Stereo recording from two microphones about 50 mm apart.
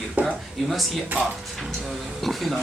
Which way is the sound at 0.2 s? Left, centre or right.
Right.